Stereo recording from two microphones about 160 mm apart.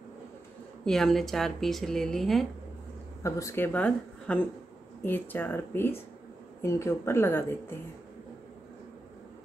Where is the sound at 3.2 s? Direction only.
20° left (ahead or behind).